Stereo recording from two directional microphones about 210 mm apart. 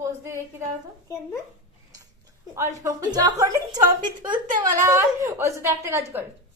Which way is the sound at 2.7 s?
15° right (ahead or behind).